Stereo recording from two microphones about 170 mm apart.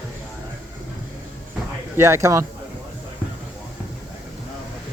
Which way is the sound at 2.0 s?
15° right (ahead or behind).